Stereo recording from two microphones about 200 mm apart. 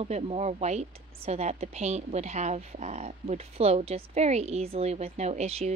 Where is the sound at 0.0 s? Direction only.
30° right (ahead or behind).